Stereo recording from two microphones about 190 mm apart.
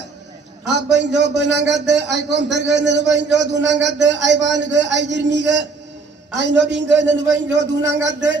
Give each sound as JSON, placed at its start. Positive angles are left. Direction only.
{"t": 0.7, "sound": "a man's voice", "side_deg": -65}